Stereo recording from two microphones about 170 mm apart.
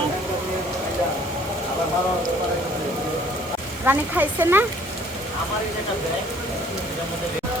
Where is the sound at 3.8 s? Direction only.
10° right (ahead or behind).